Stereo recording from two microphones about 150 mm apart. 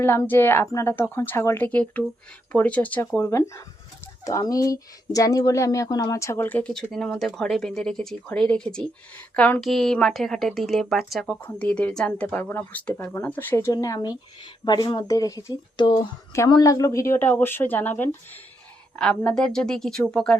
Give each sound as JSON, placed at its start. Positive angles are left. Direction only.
{"t": 0.0, "sound": "speech", "side_deg": 15}